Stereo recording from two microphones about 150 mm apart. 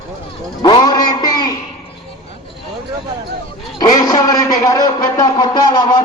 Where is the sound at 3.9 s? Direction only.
25° left (ahead or behind).